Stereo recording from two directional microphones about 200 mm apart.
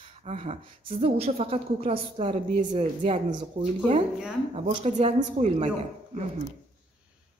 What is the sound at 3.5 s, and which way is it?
Speech, 40° right (ahead or behind).